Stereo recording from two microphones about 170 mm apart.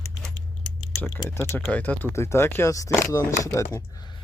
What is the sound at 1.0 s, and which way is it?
Speech, 15° left (ahead or behind).